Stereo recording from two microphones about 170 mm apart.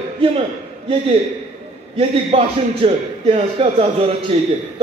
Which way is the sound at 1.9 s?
35° right (ahead or behind).